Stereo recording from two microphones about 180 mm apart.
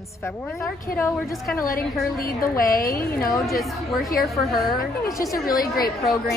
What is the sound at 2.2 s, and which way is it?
A woman's voice, 55° left (ahead or behind).